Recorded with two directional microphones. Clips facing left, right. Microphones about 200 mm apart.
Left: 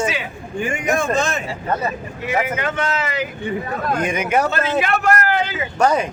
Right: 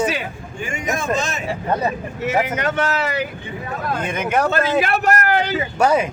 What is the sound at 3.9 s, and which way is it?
Speech, 10° left (ahead or behind).